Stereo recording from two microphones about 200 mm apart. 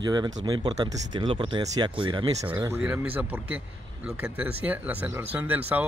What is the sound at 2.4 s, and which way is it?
Speech, 10° right (ahead or behind).